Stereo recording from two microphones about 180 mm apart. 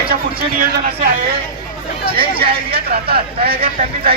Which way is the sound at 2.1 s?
60° right (ahead or behind).